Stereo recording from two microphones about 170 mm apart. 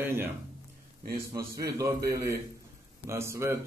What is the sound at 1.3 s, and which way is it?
A man's voice, 20° right (ahead or behind).